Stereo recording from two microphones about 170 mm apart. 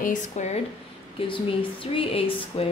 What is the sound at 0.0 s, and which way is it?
Speech, 45° left (ahead or behind).